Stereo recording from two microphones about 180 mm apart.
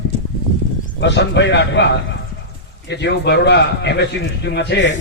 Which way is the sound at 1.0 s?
75° left (ahead or behind).